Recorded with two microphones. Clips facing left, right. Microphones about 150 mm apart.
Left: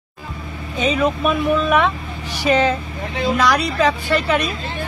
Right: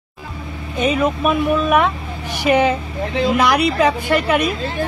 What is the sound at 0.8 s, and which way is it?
Speech, 5° right (ahead or behind).